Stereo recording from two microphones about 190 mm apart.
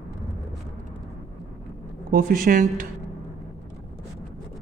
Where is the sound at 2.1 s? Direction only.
45° right (ahead or behind).